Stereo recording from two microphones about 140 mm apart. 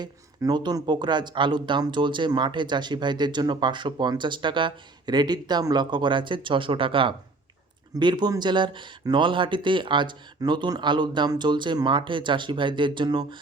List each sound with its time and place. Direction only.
0.0 s speech: 30° right (ahead or behind)